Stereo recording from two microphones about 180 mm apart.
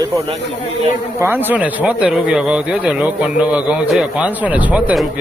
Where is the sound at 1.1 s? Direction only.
10° right (ahead or behind).